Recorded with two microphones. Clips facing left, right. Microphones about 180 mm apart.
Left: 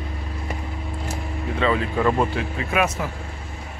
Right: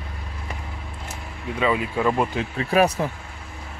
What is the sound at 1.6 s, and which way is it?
Speech, 10° right (ahead or behind).